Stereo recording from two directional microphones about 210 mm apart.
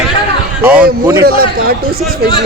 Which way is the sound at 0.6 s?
5° right (ahead or behind).